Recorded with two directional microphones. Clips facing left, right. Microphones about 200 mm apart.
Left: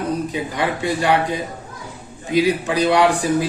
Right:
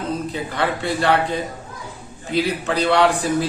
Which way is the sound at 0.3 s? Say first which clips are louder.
Left 1 dB; 15° left (ahead or behind).